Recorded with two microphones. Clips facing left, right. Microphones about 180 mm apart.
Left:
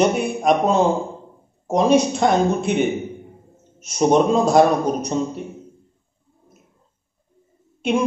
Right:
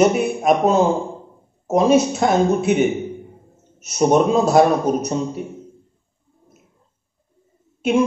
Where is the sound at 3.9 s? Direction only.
5° right (ahead or behind).